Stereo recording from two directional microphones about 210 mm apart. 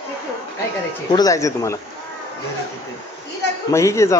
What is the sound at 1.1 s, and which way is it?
Speech, 15° left (ahead or behind).